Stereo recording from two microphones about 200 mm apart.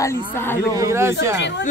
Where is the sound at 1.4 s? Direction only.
60° left (ahead or behind).